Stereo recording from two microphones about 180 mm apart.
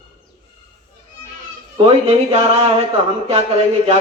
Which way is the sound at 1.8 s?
35° right (ahead or behind).